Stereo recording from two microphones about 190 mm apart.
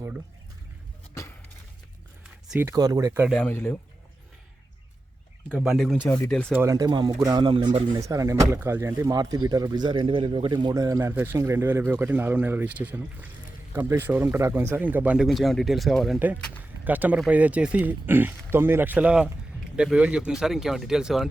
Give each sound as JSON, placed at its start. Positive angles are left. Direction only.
{"t": 2.5, "sound": "speech", "side_deg": -15}
{"t": 3.3, "sound": "speech", "side_deg": 10}
{"t": 5.5, "sound": "speech", "side_deg": -5}
{"t": 6.5, "sound": "speech", "side_deg": -15}